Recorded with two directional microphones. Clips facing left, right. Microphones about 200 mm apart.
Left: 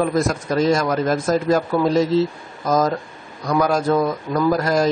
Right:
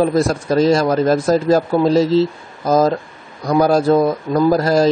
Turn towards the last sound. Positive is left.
turn(degrees=-35)  # may be behind; listen again after turning